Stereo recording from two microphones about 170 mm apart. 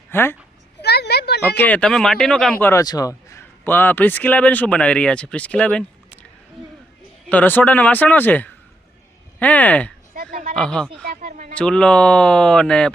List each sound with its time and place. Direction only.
0.1 s a child's voice: 15° left (ahead or behind)
0.8 s a sound: 75° left (ahead or behind)
1.5 s speech: 10° left (ahead or behind)
2.8 s a man's voice: 20° left (ahead or behind); by 5.8 s 5° left (ahead or behind)
7.3 s a man's voice: 10° left (ahead or behind)
11.3 s speech: 50° right (ahead or behind)
11.5 s speech: 5° left (ahead or behind)